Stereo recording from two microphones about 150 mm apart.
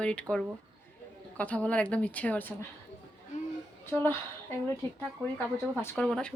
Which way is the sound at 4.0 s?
15° left (ahead or behind).